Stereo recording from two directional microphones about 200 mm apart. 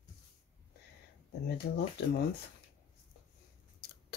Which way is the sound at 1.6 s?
50° left (ahead or behind).